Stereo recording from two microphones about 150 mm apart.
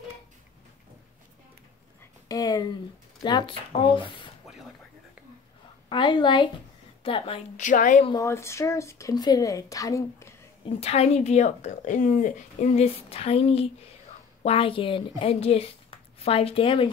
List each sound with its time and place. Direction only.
2.2 s speech: 25° left (ahead or behind)
5.9 s a woman's voice: 30° left (ahead or behind)
7.5 s a woman's voice: 55° left (ahead or behind)
8.1 s speech: 20° left (ahead or behind)
10.6 s a woman's voice: 40° left (ahead or behind)